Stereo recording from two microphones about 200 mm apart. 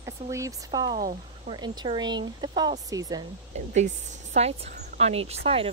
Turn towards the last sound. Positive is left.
turn(degrees=-30)  # may be behind; listen again after turning